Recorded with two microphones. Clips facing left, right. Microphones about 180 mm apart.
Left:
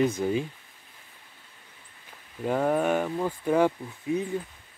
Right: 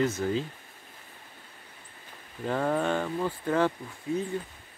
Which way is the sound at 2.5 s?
10° left (ahead or behind).